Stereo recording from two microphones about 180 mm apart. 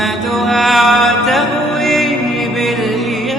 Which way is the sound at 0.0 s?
Centre (ahead or behind).